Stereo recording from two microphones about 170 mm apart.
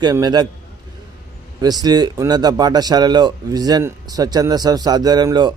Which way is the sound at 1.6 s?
25° right (ahead or behind).